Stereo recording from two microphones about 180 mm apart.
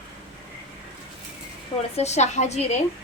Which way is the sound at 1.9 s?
35° left (ahead or behind).